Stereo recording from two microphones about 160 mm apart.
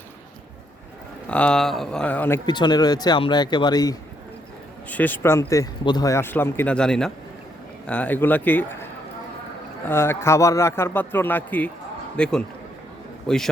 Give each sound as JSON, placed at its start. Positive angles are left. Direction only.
{"t": 1.3, "sound": "speech", "side_deg": 5}
{"t": 2.5, "sound": "speech", "side_deg": 30}
{"t": 4.9, "sound": "speech", "side_deg": 10}